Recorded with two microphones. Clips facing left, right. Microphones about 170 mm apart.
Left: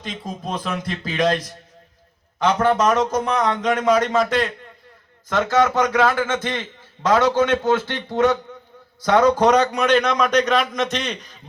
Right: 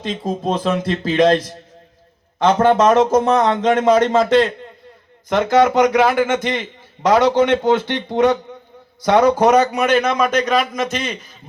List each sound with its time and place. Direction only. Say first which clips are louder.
0.0 s a man's voice: right 8 dB; 30° right (ahead or behind); by 11.3 s 5° right (ahead or behind)